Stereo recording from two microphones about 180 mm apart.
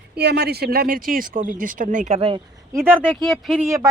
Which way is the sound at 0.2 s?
65° right (ahead or behind).